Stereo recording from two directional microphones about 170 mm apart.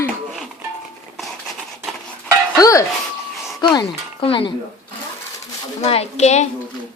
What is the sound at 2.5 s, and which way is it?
Music, 20° left (ahead or behind).